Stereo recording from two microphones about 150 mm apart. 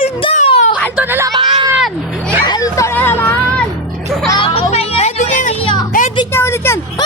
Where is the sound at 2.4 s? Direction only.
25° left (ahead or behind).